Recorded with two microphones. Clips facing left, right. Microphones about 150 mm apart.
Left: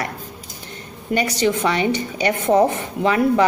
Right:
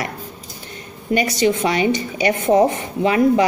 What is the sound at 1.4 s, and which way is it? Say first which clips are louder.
A woman's voice: right 1 dB; 15° right (ahead or behind).